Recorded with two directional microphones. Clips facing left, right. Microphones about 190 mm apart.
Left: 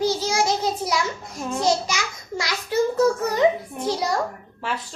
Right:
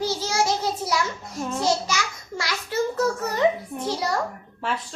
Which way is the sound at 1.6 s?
15° left (ahead or behind).